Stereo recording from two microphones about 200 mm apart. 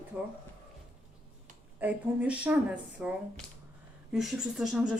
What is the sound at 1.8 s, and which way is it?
Speech, 5° right (ahead or behind).